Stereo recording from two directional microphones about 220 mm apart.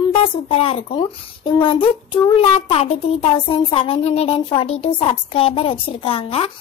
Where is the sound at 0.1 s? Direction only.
25° left (ahead or behind).